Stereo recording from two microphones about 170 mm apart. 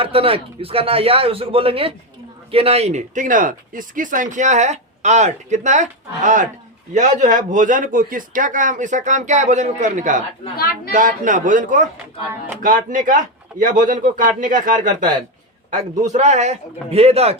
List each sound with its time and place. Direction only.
0.0 s a man's voice: 35° right (ahead or behind); by 14.7 s 50° right (ahead or behind)
14.8 s a man's voice: 25° right (ahead or behind)
16.1 s a man's voice: 40° right (ahead or behind)